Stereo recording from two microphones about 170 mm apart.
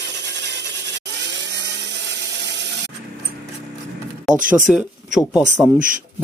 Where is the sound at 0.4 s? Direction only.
90° right.